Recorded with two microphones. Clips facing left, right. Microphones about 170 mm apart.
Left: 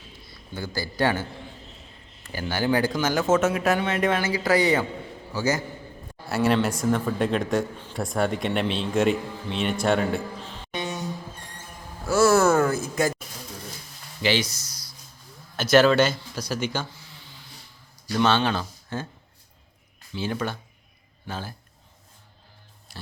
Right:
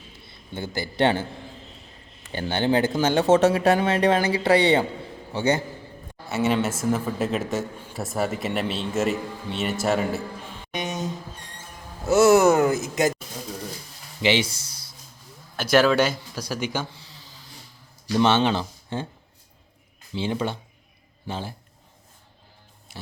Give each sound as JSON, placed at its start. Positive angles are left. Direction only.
{"t": 0.5, "sound": "speech", "side_deg": -20}
{"t": 2.3, "sound": "speech", "side_deg": -25}
{"t": 6.2, "sound": "speech", "side_deg": 0}
{"t": 10.7, "sound": "a sound", "side_deg": -20}
{"t": 14.2, "sound": "a sound", "side_deg": -25}
{"t": 15.5, "sound": "speech", "side_deg": -10}
{"t": 18.2, "sound": "speech", "side_deg": -25}
{"t": 20.1, "sound": "a man's voice", "side_deg": -25}